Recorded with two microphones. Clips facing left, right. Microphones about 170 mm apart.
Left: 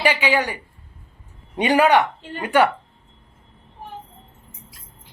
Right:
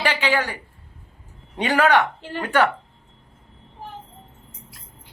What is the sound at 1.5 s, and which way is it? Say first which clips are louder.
Speech: left 2 dB; 15° left (ahead or behind).